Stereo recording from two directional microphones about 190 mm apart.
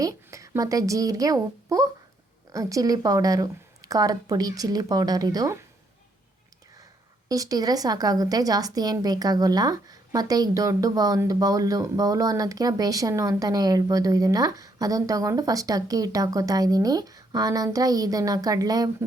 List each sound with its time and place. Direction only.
0.0 s a woman's voice: 15° right (ahead or behind)
7.3 s a woman's voice: 20° right (ahead or behind)